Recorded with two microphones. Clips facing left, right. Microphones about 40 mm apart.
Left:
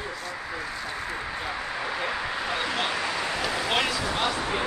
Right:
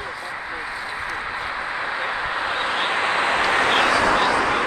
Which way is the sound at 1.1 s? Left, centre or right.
Right.